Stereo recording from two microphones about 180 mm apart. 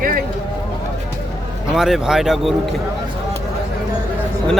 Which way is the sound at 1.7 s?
Centre (ahead or behind).